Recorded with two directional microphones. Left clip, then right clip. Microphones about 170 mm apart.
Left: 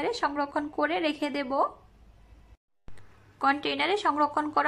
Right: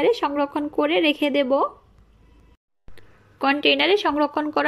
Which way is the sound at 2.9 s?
10° right (ahead or behind).